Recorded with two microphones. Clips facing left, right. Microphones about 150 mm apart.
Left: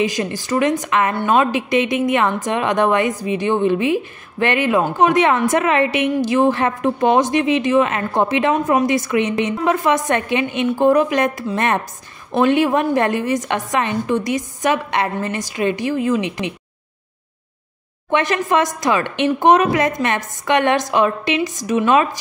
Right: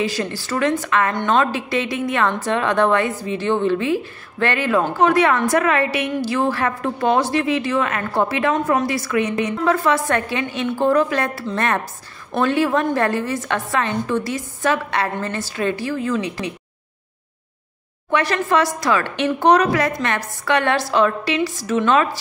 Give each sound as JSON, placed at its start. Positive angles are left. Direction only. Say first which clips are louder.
{"t": 0.0, "sound": "a woman's voice", "louder": "left 3 dB", "side_deg": 15}
{"t": 18.1, "sound": "a woman's voice", "louder": "left 1 dB", "side_deg": 20}